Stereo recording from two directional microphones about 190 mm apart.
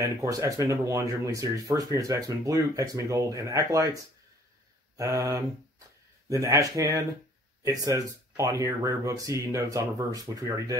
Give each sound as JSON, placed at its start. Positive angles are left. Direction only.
{"t": 0.0, "sound": "speech", "side_deg": -15}